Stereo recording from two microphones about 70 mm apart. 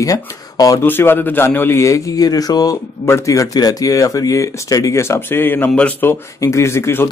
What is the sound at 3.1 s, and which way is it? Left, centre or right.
Speech, left.